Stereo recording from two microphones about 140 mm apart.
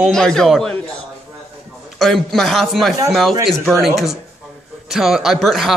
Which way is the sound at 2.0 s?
Centre (ahead or behind).